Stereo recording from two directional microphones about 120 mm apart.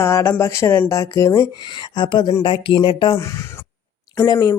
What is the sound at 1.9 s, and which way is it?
Speech, 40° left (ahead or behind).